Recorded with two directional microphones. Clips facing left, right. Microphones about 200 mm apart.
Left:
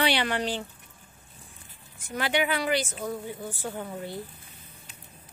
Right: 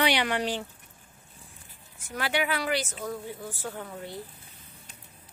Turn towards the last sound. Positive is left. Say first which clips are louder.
# left 3 dB
turn(degrees=5)  # may be behind; listen again after turning